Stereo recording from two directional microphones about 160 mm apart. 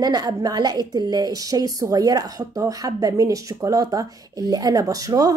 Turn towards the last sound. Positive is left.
turn(degrees=-20)  # may be behind; listen again after turning